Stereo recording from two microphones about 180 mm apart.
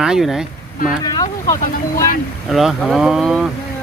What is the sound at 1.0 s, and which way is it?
Speech, 20° left (ahead or behind).